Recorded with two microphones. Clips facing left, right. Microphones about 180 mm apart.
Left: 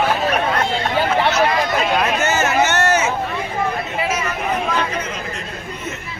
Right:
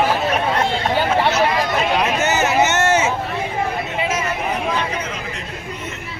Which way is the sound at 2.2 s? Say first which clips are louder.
Even; 15° right (ahead or behind).